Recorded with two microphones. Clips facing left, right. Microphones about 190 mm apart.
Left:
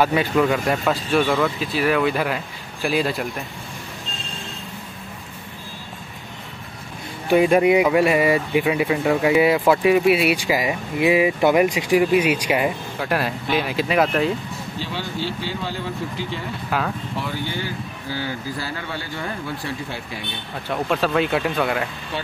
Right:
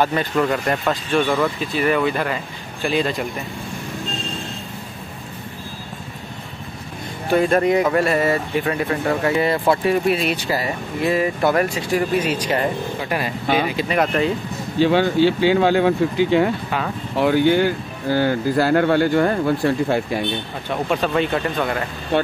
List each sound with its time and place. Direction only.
0.0 s speech: 10° left (ahead or behind)
7.2 s speech: 10° left (ahead or behind)
14.8 s speech: 65° right (ahead or behind)
20.7 s speech: centre (ahead or behind)
22.1 s speech: 60° right (ahead or behind)